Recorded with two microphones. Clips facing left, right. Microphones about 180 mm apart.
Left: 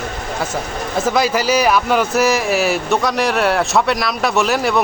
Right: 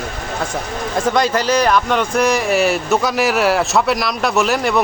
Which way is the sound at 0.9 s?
5° left (ahead or behind).